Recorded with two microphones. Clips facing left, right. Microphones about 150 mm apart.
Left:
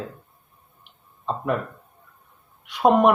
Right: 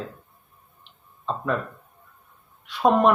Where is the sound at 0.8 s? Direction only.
15° left (ahead or behind).